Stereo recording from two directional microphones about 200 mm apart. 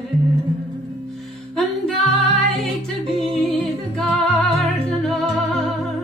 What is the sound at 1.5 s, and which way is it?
Music, 5° left (ahead or behind).